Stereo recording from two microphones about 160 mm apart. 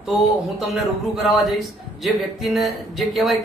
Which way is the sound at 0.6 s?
Centre (ahead or behind).